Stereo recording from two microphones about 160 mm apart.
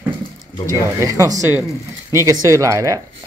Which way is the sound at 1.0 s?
20° right (ahead or behind).